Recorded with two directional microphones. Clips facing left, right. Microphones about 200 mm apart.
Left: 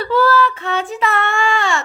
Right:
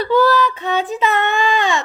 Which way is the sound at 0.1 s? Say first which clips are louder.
Even; 15° right (ahead or behind).